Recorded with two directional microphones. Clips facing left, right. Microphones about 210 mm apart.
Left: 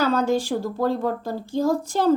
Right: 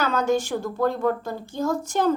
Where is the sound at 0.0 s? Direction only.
35° left (ahead or behind).